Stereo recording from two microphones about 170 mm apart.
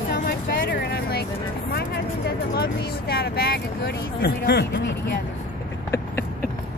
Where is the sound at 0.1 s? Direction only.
65° left (ahead or behind).